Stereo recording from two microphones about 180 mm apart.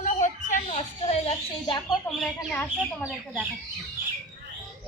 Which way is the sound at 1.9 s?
5° left (ahead or behind).